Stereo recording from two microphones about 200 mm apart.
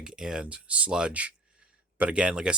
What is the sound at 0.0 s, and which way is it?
Speech, 5° right (ahead or behind).